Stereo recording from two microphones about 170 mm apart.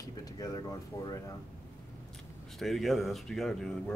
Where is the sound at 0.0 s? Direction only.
20° left (ahead or behind).